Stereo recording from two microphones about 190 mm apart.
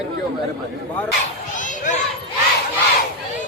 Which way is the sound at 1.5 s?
40° left (ahead or behind).